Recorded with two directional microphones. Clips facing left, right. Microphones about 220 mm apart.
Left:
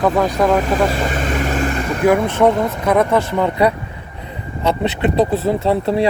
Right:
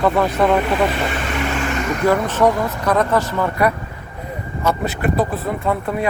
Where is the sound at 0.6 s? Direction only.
45° left (ahead or behind).